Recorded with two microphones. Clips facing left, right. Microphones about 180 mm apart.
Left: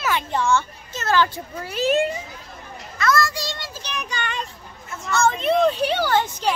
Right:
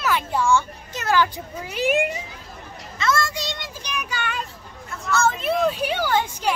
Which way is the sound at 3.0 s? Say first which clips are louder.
Left 2 dB; 25° right (ahead or behind).